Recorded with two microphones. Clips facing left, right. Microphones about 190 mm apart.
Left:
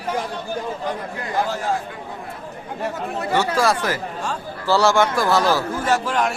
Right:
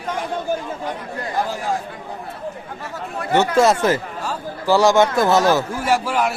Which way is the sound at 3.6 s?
25° right (ahead or behind).